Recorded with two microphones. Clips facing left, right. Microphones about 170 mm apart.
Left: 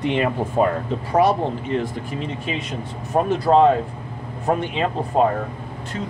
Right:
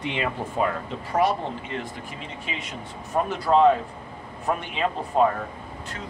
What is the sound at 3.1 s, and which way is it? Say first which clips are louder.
Speech: left 5 dB; 40° left (ahead or behind).